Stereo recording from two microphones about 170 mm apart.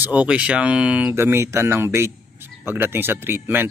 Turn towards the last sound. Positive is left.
turn(degrees=-10)  # may be behind; listen again after turning